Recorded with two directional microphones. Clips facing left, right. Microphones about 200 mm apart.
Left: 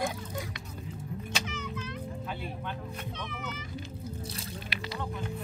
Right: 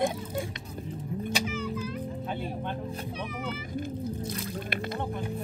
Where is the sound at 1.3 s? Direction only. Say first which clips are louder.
Right 5 dB; 10° right (ahead or behind).